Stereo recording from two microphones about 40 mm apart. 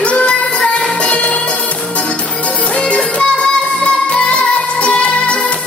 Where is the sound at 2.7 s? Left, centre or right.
Left.